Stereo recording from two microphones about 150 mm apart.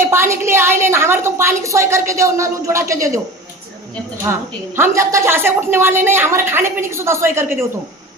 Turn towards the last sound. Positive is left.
turn(degrees=-15)  # may be behind; listen again after turning